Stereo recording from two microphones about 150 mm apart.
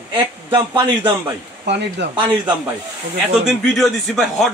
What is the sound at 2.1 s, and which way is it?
Speech, 30° right (ahead or behind).